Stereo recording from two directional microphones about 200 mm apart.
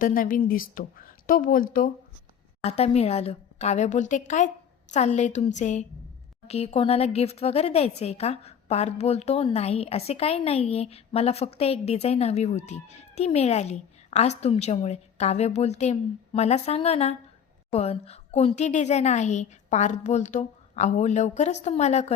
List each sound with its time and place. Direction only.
0.0 s a woman's voice: 45° left (ahead or behind)
2.6 s a woman's voice: 30° left (ahead or behind)